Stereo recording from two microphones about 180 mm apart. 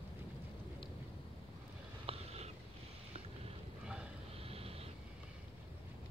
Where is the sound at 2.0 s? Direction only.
35° right (ahead or behind).